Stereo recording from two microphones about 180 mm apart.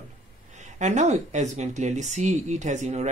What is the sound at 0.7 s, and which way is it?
Speech, 40° right (ahead or behind).